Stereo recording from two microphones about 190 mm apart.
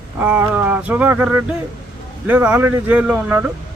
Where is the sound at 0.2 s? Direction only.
10° right (ahead or behind).